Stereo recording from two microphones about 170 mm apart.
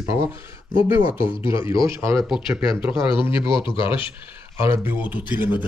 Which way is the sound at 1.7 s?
30° left (ahead or behind).